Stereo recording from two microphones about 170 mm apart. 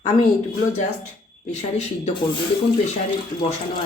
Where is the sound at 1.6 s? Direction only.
40° left (ahead or behind).